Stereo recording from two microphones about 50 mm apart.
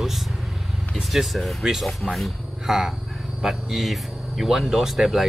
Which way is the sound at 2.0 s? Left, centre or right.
Left.